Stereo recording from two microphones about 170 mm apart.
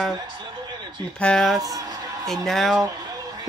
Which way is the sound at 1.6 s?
20° right (ahead or behind).